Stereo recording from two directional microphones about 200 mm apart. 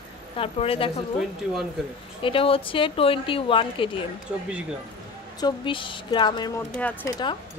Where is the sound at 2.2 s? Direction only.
25° left (ahead or behind).